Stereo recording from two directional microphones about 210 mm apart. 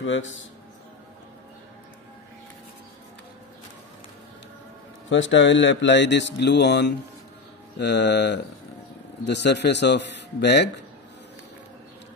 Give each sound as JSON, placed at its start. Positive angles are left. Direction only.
{"t": 0.0, "sound": "speech", "side_deg": 65}
{"t": 5.1, "sound": "a man's voice", "side_deg": 60}